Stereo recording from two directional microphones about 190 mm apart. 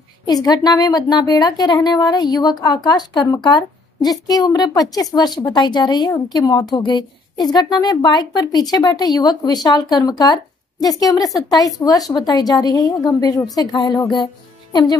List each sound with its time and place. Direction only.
0.2 s a woman's voice: 20° left (ahead or behind)